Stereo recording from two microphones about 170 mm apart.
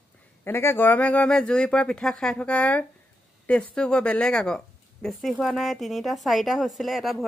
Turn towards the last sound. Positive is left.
turn(degrees=0)  # may be behind; listen again after turning